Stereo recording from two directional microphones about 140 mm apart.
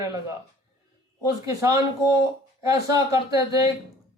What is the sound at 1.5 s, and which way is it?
Speech, 25° right (ahead or behind).